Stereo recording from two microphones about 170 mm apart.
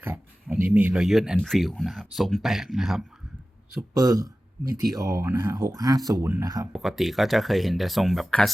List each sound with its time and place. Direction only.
0.6 s speech: 10° right (ahead or behind)
3.8 s speech: 20° right (ahead or behind)
6.7 s speech: centre (ahead or behind)